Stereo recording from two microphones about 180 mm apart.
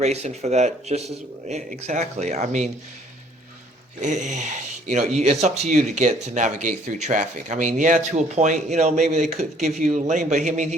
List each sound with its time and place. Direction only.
0.0 s speech: 40° right (ahead or behind)
4.0 s speech: 40° right (ahead or behind)